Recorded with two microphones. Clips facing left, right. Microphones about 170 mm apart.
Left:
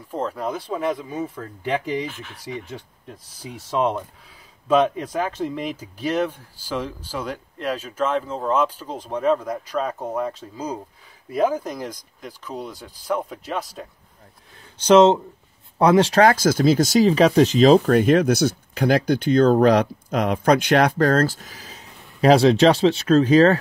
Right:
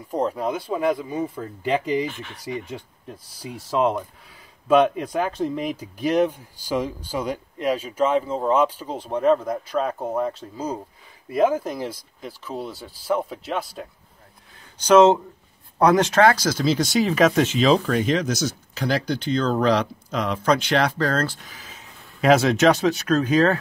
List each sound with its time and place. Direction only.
0.1 s speech: 15° right (ahead or behind)
15.8 s speech: 30° left (ahead or behind)
17.6 s speech: 50° left (ahead or behind); by 23.6 s 35° left (ahead or behind)